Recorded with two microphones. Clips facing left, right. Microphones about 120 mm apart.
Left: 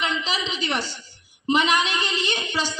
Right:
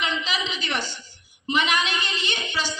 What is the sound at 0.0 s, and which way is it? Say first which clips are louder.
A woman's voice: left 1 dB; 35° left (ahead or behind).